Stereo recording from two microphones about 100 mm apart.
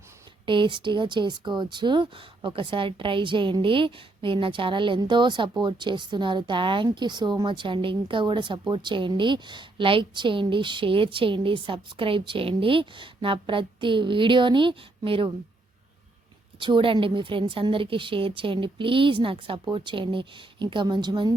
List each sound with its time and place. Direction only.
0.4 s a woman's voice: 55° right (ahead or behind)
16.6 s a woman's voice: 55° right (ahead or behind)